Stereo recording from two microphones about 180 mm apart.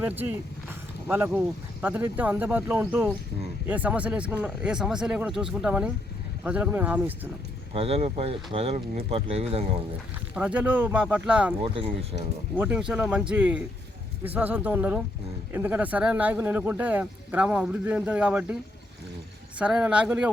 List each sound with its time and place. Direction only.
0.0 s speech: 10° right (ahead or behind)
7.7 s speech: 35° right (ahead or behind)
10.3 s speech: 10° right (ahead or behind)
11.6 s speech: 30° right (ahead or behind)
12.5 s speech: 5° right (ahead or behind)
19.5 s speech: 5° right (ahead or behind)